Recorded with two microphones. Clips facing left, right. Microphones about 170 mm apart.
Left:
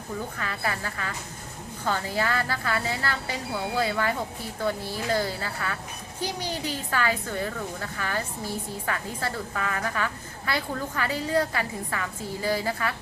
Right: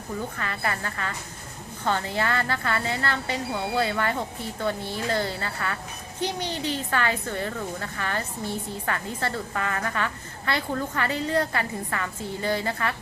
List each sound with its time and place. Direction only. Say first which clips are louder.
0.3 s a woman's voice: right 1 dB; 5° left (ahead or behind)
6.2 s speech: right 2 dB; 25° right (ahead or behind)
6.9 s a woman's voice: left 2 dB; 5° left (ahead or behind)
9.2 s a woman's voice: right 2 dB; 5° left (ahead or behind)